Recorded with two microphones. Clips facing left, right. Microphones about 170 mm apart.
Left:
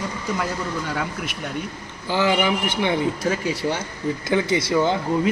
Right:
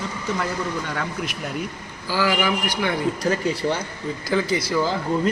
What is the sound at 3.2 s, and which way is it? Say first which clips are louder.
Speech: right 1 dB; 5° left (ahead or behind).